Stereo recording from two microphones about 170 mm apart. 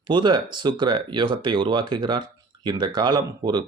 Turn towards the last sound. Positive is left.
turn(degrees=-25)  # may be behind; listen again after turning